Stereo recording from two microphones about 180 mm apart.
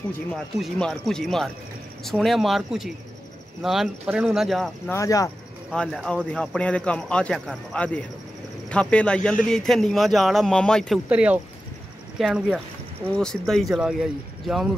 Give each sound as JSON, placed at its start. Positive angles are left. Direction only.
{"t": 0.3, "sound": "a man's voice", "side_deg": 5}
{"t": 4.9, "sound": "speech", "side_deg": 20}
{"t": 5.7, "sound": "a man's voice", "side_deg": 5}
{"t": 11.1, "sound": "a man's voice", "side_deg": -5}